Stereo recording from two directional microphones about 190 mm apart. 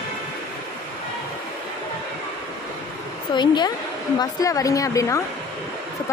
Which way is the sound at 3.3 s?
25° left (ahead or behind).